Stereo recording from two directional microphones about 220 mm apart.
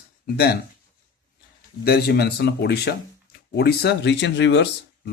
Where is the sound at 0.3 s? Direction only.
45° left (ahead or behind).